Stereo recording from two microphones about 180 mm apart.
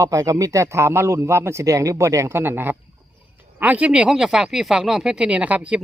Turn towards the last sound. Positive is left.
turn(degrees=-10)  # may be behind; listen again after turning